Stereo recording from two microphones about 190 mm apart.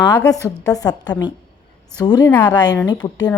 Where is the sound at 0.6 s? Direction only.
20° left (ahead or behind).